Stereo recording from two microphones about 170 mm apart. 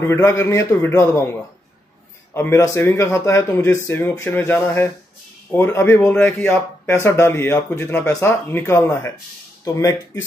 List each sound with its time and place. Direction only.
0.0 s speech: 15° left (ahead or behind)
2.3 s speech: 15° left (ahead or behind)